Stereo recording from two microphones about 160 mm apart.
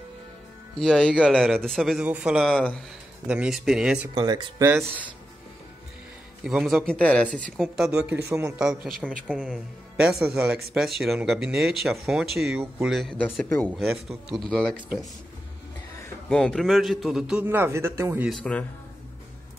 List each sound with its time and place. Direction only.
0.7 s speech: 5° left (ahead or behind)
4.1 s speech: 30° right (ahead or behind)
6.4 s a man's voice: centre (ahead or behind)
8.5 s speech: 5° right (ahead or behind)
13.7 s speech: centre (ahead or behind)
16.3 s speech: 5° left (ahead or behind); by 18.3 s 15° right (ahead or behind)
18.3 s speech: 10° left (ahead or behind)